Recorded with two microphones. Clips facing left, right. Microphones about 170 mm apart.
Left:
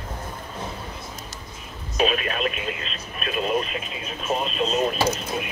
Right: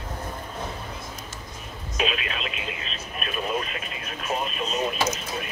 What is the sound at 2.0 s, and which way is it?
Speech, 45° left (ahead or behind).